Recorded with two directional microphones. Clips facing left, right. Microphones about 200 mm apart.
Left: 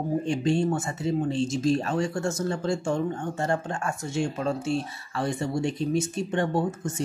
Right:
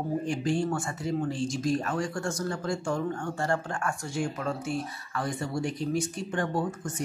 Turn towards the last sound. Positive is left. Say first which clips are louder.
# left 4 dB
turn(degrees=25)  # may be behind; listen again after turning